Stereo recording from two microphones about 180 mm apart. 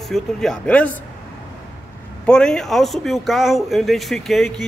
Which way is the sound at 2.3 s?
5° left (ahead or behind).